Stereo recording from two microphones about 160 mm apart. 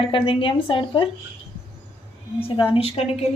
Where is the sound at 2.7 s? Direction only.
40° left (ahead or behind).